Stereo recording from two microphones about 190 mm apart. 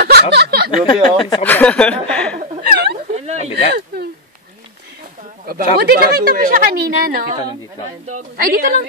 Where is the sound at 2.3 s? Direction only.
50° right (ahead or behind).